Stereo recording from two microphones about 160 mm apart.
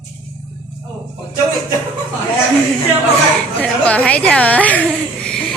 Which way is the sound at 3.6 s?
10° left (ahead or behind).